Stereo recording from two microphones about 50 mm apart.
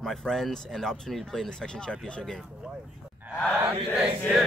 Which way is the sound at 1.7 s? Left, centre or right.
Centre.